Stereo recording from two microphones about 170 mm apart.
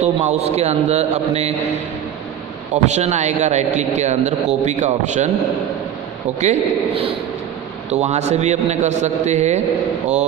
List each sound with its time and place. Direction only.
0.0 s a man's voice: 40° right (ahead or behind)
2.8 s a man's voice: 40° right (ahead or behind)
6.4 s a man's voice: 40° right (ahead or behind)